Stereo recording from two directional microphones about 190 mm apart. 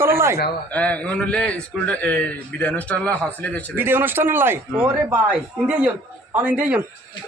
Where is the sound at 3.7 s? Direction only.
10° right (ahead or behind).